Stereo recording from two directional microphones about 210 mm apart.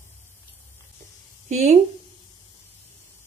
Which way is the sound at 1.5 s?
30° right (ahead or behind).